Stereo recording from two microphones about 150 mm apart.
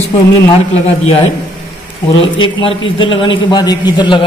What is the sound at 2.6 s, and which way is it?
A man's voice, 35° left (ahead or behind).